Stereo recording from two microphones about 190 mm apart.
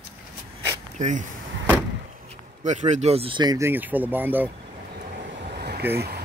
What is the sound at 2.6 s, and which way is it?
Speech, 40° right (ahead or behind).